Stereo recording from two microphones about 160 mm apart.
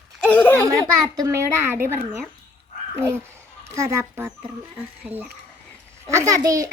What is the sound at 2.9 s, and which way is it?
Speech, 15° right (ahead or behind).